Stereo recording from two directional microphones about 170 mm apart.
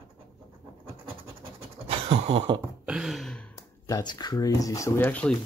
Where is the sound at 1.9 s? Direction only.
35° right (ahead or behind).